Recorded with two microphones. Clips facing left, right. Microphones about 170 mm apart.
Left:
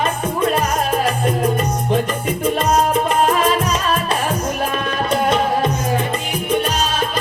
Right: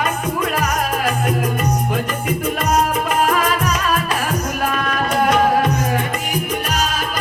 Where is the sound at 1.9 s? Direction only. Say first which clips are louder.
Left 2 dB; 30° left (ahead or behind).